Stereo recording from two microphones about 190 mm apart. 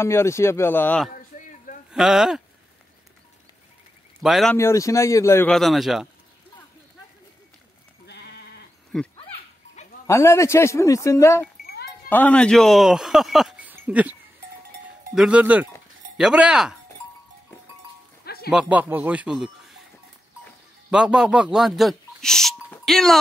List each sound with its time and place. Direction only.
0.0 s speech: 15° left (ahead or behind)
1.9 s speech: centre (ahead or behind)
4.2 s speech: centre (ahead or behind)
4.6 s speech: 15° left (ahead or behind)
5.5 s speech: centre (ahead or behind)
8.1 s sheep: 60° left (ahead or behind)
9.1 s dog: 30° left (ahead or behind)
10.0 s speech: 15° left (ahead or behind); by 14.1 s 10° right (ahead or behind)
15.1 s speech: 5° right (ahead or behind)
18.2 s music: 55° left (ahead or behind)
18.5 s speech: 5° right (ahead or behind)
20.9 s speech: 5° right (ahead or behind)